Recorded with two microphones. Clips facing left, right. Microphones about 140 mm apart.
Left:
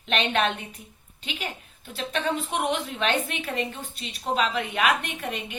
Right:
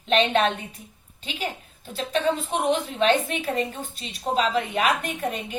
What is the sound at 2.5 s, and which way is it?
A woman's voice, 35° right (ahead or behind).